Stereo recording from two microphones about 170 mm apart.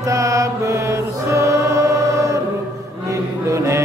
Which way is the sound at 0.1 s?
20° right (ahead or behind).